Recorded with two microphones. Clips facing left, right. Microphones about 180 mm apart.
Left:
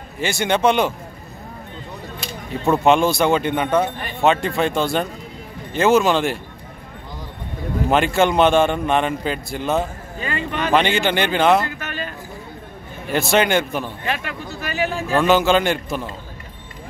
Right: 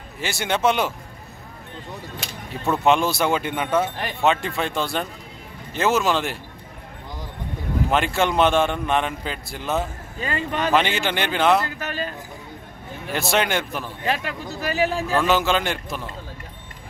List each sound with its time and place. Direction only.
0.2 s a man's voice: centre (ahead or behind)
2.7 s a man's voice: centre (ahead or behind)
7.9 s a man's voice: centre (ahead or behind)
10.2 s speech: 40° right (ahead or behind)
10.7 s a man's voice: centre (ahead or behind)
11.8 s a sound: 35° right (ahead or behind)
13.1 s a man's voice: centre (ahead or behind)
14.0 s speech: 35° right (ahead or behind)
15.1 s a man's voice: centre (ahead or behind)